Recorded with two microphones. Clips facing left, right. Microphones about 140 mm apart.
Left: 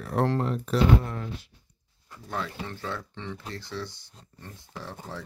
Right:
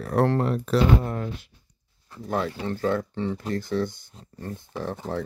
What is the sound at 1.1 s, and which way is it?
Speech, 50° right (ahead or behind).